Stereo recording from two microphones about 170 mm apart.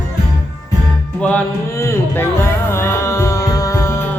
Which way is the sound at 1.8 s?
15° left (ahead or behind).